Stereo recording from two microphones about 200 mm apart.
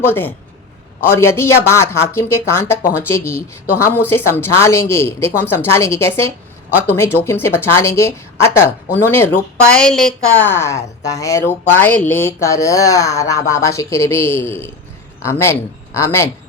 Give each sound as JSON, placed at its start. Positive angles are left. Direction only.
{"t": 0.0, "sound": "speech", "side_deg": 10}